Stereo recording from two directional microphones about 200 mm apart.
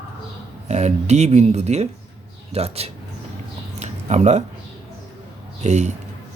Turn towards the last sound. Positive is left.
turn(degrees=-35)  # may be behind; listen again after turning